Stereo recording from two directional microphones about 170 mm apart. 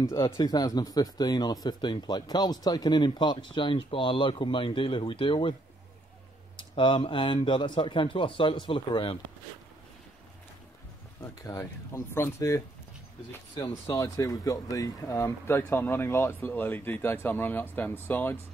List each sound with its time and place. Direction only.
0.0 s speech: 20° left (ahead or behind)
6.5 s speech: 30° left (ahead or behind)
11.4 s speech: 15° left (ahead or behind)